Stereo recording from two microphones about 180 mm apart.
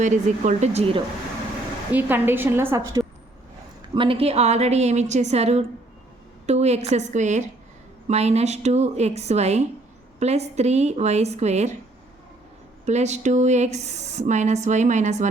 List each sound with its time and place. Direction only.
0.0 s speech: 40° right (ahead or behind)
1.9 s a woman's voice: 10° right (ahead or behind)
3.9 s speech: 30° right (ahead or behind)
12.8 s speech: 40° right (ahead or behind)